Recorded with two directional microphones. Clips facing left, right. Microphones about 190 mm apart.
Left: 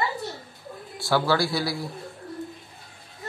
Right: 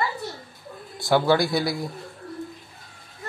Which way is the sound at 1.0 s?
20° right (ahead or behind).